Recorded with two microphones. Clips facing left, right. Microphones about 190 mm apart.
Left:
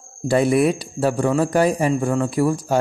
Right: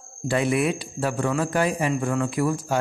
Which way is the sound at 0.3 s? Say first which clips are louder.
Left 6 dB; 35° left (ahead or behind).